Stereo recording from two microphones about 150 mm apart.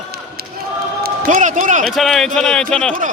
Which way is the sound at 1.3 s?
55° right (ahead or behind).